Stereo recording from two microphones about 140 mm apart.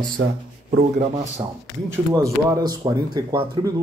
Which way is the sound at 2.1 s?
25° right (ahead or behind).